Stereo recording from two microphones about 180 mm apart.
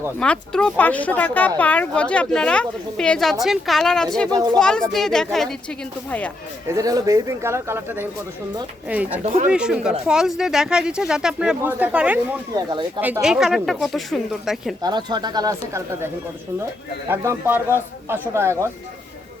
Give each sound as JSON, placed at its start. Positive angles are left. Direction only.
{"t": 0.2, "sound": "speech", "side_deg": 5}
{"t": 4.3, "sound": "speech", "side_deg": -20}
{"t": 4.6, "sound": "speech", "side_deg": 5}
{"t": 6.7, "sound": "speech", "side_deg": -20}
{"t": 9.2, "sound": "speech", "side_deg": -35}
{"t": 9.5, "sound": "speech", "side_deg": -5}
{"t": 12.5, "sound": "speech", "side_deg": -20}
{"t": 13.2, "sound": "speech", "side_deg": -5}
{"t": 14.8, "sound": "speech", "side_deg": -25}
{"t": 17.1, "sound": "speech", "side_deg": -10}